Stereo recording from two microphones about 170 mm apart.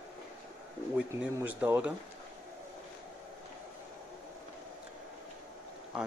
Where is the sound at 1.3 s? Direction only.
10° right (ahead or behind).